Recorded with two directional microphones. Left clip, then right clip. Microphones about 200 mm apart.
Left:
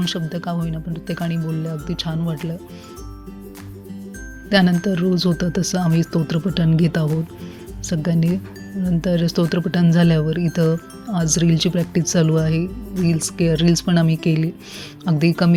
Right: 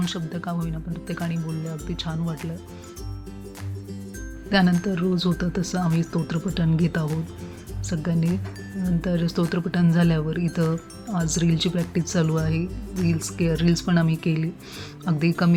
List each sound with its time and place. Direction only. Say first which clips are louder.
0.0 s speech: left 5 dB; 30° left (ahead or behind)
4.4 s speech: left 5 dB; 35° left (ahead or behind)